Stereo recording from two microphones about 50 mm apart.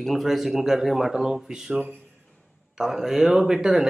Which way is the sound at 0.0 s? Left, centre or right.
Centre.